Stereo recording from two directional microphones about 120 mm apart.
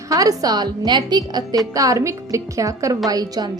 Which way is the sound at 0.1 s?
30° right (ahead or behind).